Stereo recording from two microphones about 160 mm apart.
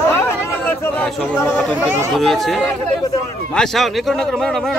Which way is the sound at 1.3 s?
10° left (ahead or behind).